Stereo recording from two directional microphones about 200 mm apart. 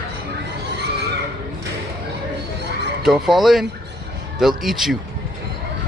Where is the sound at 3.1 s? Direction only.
Centre (ahead or behind).